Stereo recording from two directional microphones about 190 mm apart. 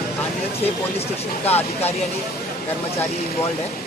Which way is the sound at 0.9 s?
35° left (ahead or behind).